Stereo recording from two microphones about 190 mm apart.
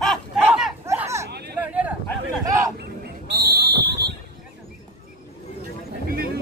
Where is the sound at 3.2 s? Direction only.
60° right (ahead or behind).